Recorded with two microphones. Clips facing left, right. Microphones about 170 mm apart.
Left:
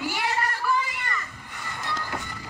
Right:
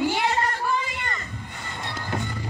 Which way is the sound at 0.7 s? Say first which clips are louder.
Left 1 dB; 25° right (ahead or behind).